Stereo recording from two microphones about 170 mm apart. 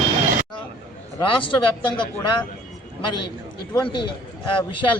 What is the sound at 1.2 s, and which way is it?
A man's voice, 30° left (ahead or behind).